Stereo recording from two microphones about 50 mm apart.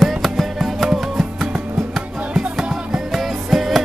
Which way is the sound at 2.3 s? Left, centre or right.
Centre.